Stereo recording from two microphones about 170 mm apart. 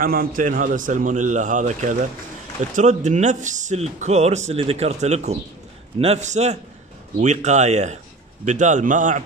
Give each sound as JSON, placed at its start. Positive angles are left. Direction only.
{"t": 0.0, "sound": "a man's voice", "side_deg": -60}